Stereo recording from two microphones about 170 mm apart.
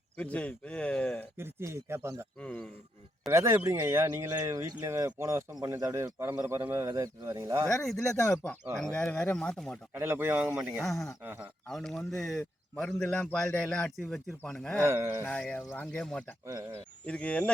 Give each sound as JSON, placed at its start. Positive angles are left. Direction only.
{"t": 0.2, "sound": "speech", "side_deg": 10}
{"t": 1.4, "sound": "speech", "side_deg": -15}
{"t": 2.4, "sound": "speech", "side_deg": 10}
{"t": 3.2, "sound": "speech", "side_deg": -15}
{"t": 7.7, "sound": "speech", "side_deg": 0}
{"t": 9.9, "sound": "speech", "side_deg": -15}
{"t": 10.8, "sound": "speech", "side_deg": 0}
{"t": 11.2, "sound": "speech", "side_deg": -10}
{"t": 11.7, "sound": "speech", "side_deg": 0}
{"t": 14.8, "sound": "speech", "side_deg": -15}
{"t": 15.2, "sound": "speech", "side_deg": 5}
{"t": 16.5, "sound": "speech", "side_deg": -15}
{"t": 17.1, "sound": "speech", "side_deg": 5}